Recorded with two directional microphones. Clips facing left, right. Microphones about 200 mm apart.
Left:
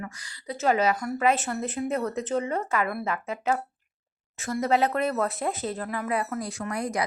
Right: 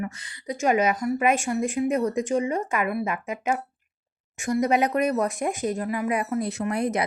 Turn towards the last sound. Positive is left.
turn(degrees=-25)  # may be behind; listen again after turning